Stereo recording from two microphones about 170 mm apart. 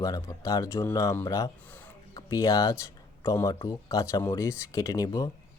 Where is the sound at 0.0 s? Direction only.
20° left (ahead or behind).